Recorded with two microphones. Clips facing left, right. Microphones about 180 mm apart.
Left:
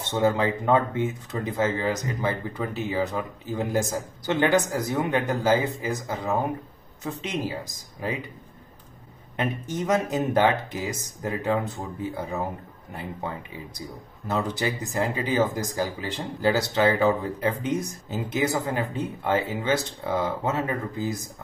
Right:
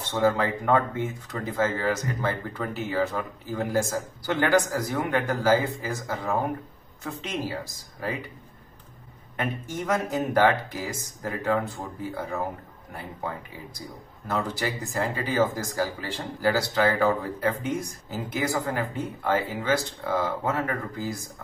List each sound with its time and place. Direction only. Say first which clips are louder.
0.0 s speech: left 1 dB; 20° left (ahead or behind)
9.4 s speech: left 2 dB; 20° left (ahead or behind)
13.7 s speech: left 2 dB; 20° left (ahead or behind)